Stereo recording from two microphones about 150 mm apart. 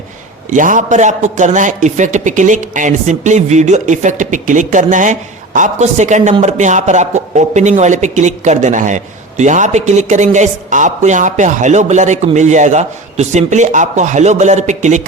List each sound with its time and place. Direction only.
0.5 s a man's voice: 60° right (ahead or behind)